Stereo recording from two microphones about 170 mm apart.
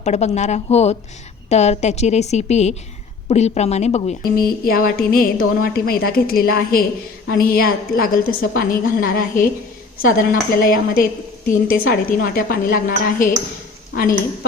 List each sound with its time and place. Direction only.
0.0 s a woman's voice: 40° left (ahead or behind)
4.2 s a woman's voice: 60° left (ahead or behind)